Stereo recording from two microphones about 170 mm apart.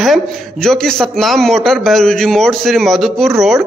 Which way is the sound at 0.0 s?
Centre (ahead or behind).